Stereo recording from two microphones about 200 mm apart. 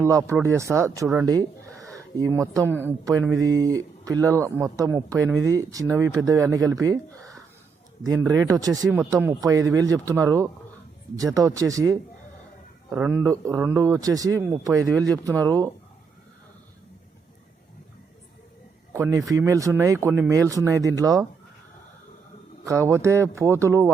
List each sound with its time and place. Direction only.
0.0 s speech: 15° right (ahead or behind)
8.9 s speech: 5° right (ahead or behind)
18.9 s speech: 15° right (ahead or behind)
22.6 s speech: 15° right (ahead or behind)